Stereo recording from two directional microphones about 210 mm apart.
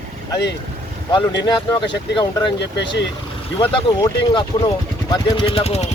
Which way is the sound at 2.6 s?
55° left (ahead or behind).